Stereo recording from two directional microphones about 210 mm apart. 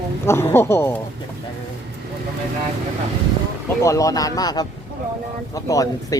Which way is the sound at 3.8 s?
15° left (ahead or behind).